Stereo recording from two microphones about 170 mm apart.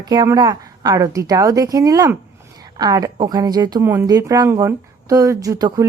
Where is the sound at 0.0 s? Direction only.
20° right (ahead or behind).